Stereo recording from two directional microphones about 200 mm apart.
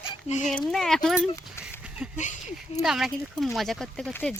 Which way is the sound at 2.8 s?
Centre (ahead or behind).